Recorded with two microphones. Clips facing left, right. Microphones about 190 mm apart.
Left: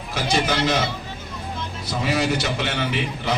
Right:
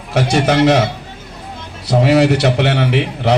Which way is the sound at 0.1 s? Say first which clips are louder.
Right 8 dB; 75° right (ahead or behind).